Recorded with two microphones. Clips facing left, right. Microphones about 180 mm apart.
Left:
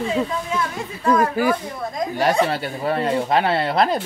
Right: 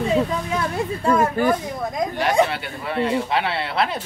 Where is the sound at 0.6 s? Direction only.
25° right (ahead or behind).